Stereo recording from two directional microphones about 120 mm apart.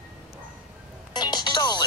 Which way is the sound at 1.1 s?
35° left (ahead or behind).